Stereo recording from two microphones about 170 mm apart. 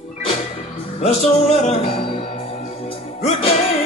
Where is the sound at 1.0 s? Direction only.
40° left (ahead or behind).